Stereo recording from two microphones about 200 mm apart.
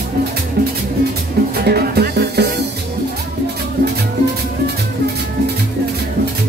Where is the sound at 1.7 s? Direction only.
50° right (ahead or behind).